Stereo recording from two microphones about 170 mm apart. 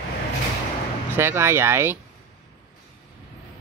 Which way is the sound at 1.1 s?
15° right (ahead or behind).